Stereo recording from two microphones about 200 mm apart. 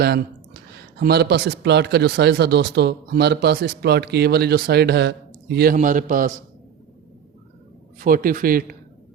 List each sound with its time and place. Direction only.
0.0 s speech: 50° right (ahead or behind)
5.7 s a man's voice: 40° right (ahead or behind)
7.9 s speech: 45° right (ahead or behind)